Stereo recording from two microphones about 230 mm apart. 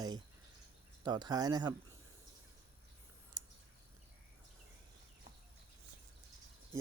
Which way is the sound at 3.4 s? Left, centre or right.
Centre.